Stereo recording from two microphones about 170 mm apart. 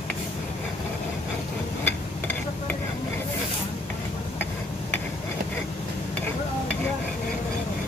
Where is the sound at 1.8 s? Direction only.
10° left (ahead or behind).